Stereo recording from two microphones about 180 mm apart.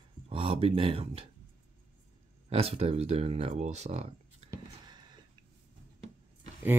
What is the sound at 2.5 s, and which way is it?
Speech, 35° right (ahead or behind).